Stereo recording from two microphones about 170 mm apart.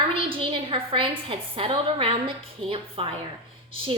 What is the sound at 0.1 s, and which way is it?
A woman's voice, 30° right (ahead or behind).